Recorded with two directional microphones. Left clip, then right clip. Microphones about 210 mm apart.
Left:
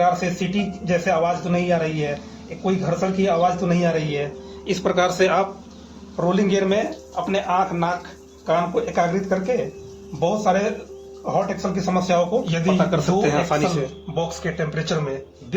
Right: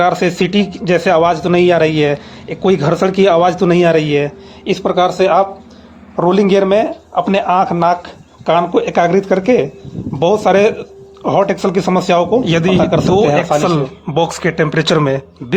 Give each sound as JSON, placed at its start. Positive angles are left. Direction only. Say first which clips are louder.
{"t": 0.0, "sound": "a man's voice", "louder": "right 7 dB", "side_deg": -45}
{"t": 4.7, "sound": "speech", "louder": "right 7 dB", "side_deg": -20}
{"t": 6.1, "sound": "a man's voice", "louder": "right 9 dB", "side_deg": -35}
{"t": 12.9, "sound": "speech", "louder": "right 9 dB", "side_deg": -25}
{"t": 14.1, "sound": "a man's voice", "louder": "right 13 dB", "side_deg": -45}